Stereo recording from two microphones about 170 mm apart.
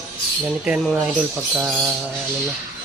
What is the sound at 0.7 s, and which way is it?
Speech, 5° right (ahead or behind).